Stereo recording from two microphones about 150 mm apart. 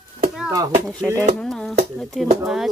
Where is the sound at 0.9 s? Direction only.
10° left (ahead or behind).